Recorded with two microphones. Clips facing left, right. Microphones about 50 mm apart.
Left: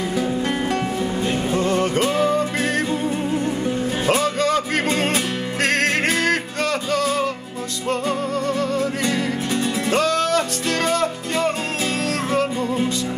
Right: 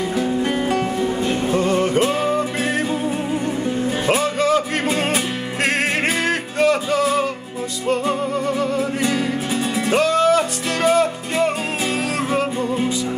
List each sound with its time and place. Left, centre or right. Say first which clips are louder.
0.1 s music: right 1 dB; centre